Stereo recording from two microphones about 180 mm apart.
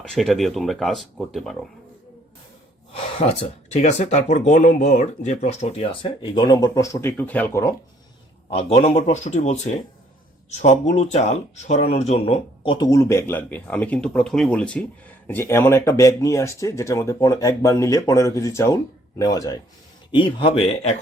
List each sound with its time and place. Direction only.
0.0 s speech: centre (ahead or behind)
2.9 s speech: 35° left (ahead or behind); by 7.7 s 15° left (ahead or behind)
8.4 s speech: 35° left (ahead or behind)